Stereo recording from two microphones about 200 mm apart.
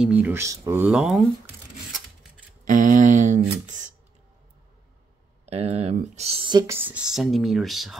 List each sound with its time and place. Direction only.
0.0 s speech: 5° right (ahead or behind)
2.6 s a sound: 40° right (ahead or behind)
5.5 s speech: 30° right (ahead or behind)
6.7 s speech: 10° right (ahead or behind)